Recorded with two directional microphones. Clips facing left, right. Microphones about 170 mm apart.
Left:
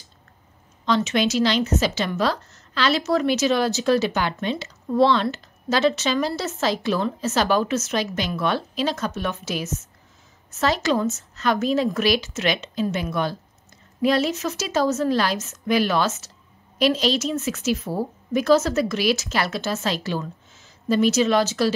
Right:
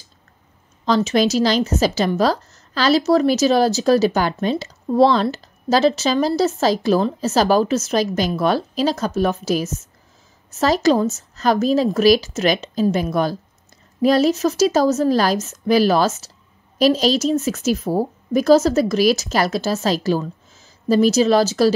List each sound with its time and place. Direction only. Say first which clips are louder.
0.8 s a woman's voice: right 4 dB; 35° right (ahead or behind)